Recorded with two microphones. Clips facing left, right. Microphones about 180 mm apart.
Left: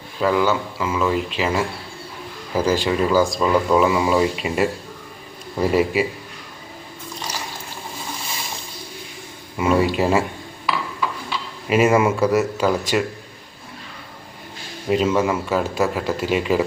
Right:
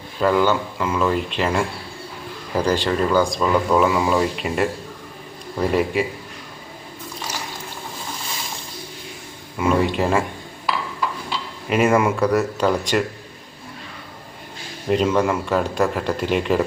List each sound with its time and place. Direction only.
0.2 s speech: centre (ahead or behind)
9.6 s speech: 5° left (ahead or behind)
11.7 s speech: 5° left (ahead or behind)
14.8 s speech: 5° left (ahead or behind)